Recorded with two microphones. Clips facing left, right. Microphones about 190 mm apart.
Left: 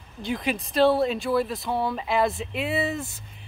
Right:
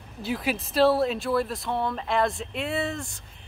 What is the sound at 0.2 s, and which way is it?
Speech, 5° right (ahead or behind).